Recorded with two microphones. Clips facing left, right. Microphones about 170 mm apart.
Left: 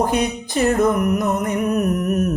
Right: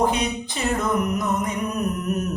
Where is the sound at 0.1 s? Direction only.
50° left (ahead or behind).